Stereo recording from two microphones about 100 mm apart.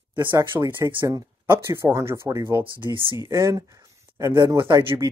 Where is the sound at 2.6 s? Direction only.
60° right (ahead or behind).